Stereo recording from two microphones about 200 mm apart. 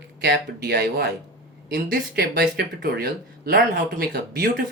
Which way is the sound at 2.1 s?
50° right (ahead or behind).